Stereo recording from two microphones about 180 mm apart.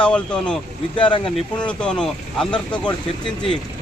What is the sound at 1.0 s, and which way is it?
Speech, 25° left (ahead or behind).